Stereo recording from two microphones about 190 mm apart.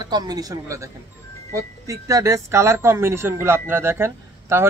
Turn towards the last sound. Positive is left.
turn(degrees=-15)  # may be behind; listen again after turning